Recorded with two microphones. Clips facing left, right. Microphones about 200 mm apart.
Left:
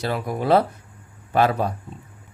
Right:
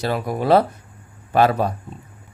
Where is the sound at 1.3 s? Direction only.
70° right (ahead or behind).